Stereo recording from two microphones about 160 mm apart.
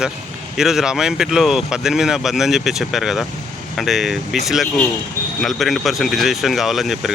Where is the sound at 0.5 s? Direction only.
5° right (ahead or behind).